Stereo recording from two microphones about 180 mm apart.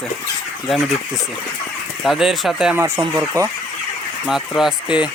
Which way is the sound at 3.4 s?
20° right (ahead or behind).